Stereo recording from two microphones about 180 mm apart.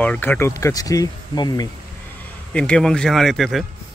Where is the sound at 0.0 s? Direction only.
10° left (ahead or behind).